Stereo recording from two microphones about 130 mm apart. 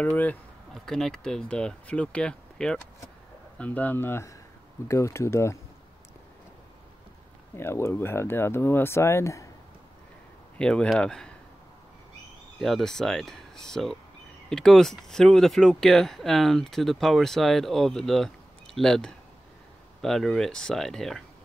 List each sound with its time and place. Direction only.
0.0 s speech: 10° left (ahead or behind)
7.5 s speech: 20° left (ahead or behind)
10.6 s speech: 5° left (ahead or behind)
12.5 s speech: centre (ahead or behind)